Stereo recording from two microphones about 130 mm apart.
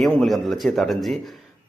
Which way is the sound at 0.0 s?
Centre (ahead or behind).